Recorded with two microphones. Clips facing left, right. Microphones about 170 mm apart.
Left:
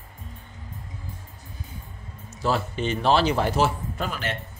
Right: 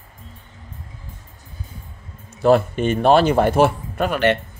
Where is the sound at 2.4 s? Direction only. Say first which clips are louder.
Right 10 dB; 55° right (ahead or behind).